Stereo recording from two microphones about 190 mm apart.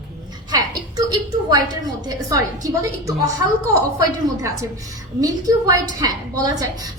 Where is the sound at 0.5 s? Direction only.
20° right (ahead or behind).